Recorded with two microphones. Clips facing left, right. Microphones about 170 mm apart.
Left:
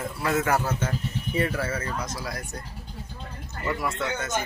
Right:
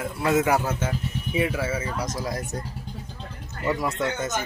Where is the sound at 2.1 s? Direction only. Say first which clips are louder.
Right 5 dB; 20° right (ahead or behind).